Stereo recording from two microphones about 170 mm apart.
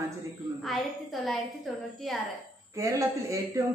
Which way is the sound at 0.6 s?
Centre (ahead or behind).